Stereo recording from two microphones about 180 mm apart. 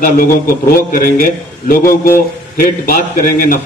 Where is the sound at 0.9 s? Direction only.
50° left (ahead or behind).